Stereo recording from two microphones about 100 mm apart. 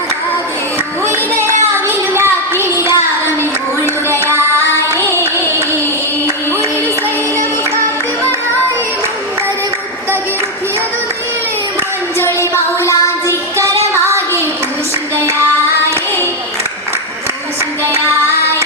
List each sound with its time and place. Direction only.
1.4 s a sound: 25° right (ahead or behind)
3.8 s child singing: 25° right (ahead or behind)
12.2 s music: 25° left (ahead or behind)
15.1 s female singing: 25° right (ahead or behind)